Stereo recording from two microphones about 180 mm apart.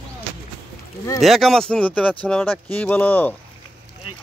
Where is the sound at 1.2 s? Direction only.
Centre (ahead or behind).